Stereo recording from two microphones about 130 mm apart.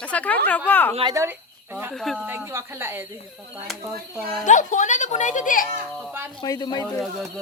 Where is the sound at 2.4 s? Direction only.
20° right (ahead or behind).